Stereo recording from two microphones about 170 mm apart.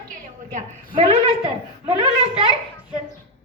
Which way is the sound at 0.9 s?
40° right (ahead or behind).